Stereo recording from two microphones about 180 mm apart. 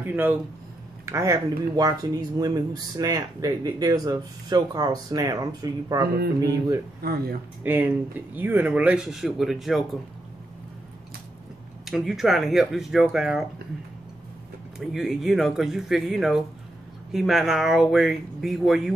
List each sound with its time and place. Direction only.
0.0 s speech: 10° right (ahead or behind)
6.0 s speech: 60° right (ahead or behind)
7.6 s speech: 10° right (ahead or behind)
11.8 s speech: centre (ahead or behind)
14.8 s speech: centre (ahead or behind)